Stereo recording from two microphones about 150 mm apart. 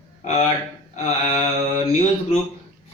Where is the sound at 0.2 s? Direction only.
50° left (ahead or behind).